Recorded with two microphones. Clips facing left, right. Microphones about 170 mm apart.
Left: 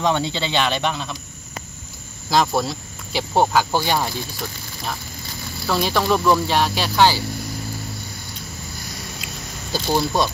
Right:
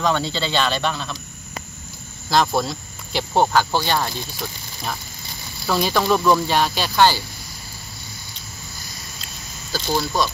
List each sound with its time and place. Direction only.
0.0 s speech: 20° left (ahead or behind)
2.2 s speech: 10° left (ahead or behind)
5.7 s speech: centre (ahead or behind)
9.2 s a sound: 15° left (ahead or behind)